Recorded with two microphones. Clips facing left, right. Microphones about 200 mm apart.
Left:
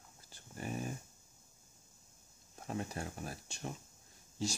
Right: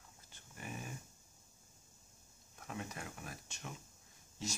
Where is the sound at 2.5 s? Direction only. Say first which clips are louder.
Left 5 dB; 35° left (ahead or behind).